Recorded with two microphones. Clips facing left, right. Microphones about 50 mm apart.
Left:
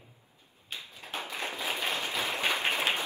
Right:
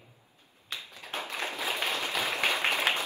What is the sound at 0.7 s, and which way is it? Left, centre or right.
Tap, right.